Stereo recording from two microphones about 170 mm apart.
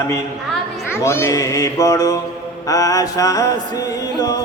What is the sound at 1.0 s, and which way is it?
Music, 15° left (ahead or behind).